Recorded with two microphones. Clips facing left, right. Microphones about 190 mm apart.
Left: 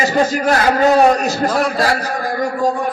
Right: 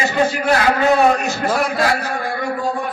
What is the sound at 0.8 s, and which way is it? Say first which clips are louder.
Speech: left 3 dB; 40° left (ahead or behind).